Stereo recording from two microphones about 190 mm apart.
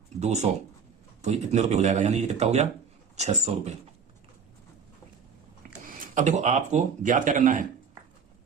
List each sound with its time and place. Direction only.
0.2 s speech: 35° right (ahead or behind)
5.9 s speech: 45° right (ahead or behind)